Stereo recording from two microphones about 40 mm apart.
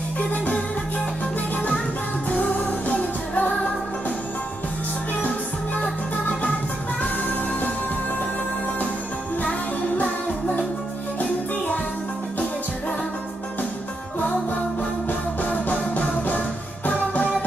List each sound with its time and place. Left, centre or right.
2.3 s music: left
9.4 s music: left
14.8 s music: left